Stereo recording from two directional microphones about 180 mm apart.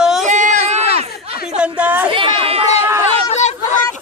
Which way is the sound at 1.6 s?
10° right (ahead or behind).